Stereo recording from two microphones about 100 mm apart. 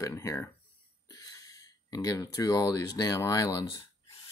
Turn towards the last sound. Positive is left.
turn(degrees=30)  # may be behind; listen again after turning